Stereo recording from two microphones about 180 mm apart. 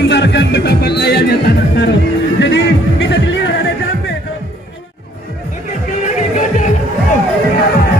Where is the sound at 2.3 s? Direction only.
85° left.